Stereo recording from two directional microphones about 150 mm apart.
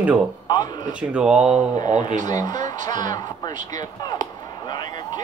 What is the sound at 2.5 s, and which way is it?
Music, 55° right (ahead or behind).